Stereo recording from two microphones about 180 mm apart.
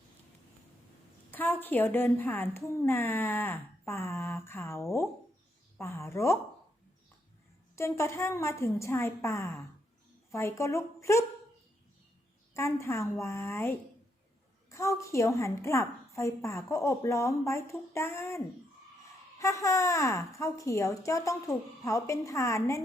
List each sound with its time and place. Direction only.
1.3 s a woman's voice: 10° left (ahead or behind)
7.8 s a woman's voice: 15° left (ahead or behind)
12.5 s a woman's voice: 15° left (ahead or behind)